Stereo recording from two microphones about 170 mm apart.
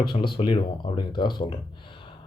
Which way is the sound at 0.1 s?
30° left (ahead or behind).